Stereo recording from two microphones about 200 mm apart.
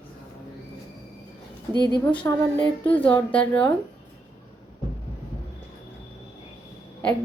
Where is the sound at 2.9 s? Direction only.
10° left (ahead or behind).